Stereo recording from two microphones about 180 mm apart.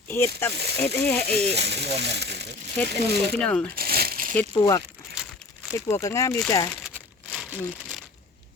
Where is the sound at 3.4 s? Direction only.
5° left (ahead or behind).